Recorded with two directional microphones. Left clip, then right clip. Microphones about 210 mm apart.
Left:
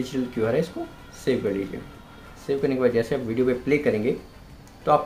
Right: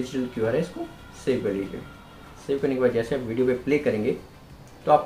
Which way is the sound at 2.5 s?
30° left (ahead or behind).